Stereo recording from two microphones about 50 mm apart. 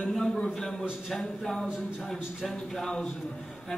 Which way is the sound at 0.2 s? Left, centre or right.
Centre.